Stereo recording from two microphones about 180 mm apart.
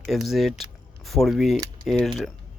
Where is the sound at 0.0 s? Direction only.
Centre (ahead or behind).